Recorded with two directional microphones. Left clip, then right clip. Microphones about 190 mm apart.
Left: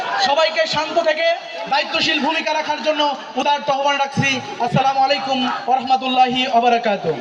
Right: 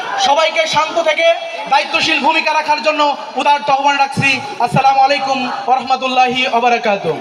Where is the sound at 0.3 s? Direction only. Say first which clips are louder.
Right 5 dB; 30° right (ahead or behind).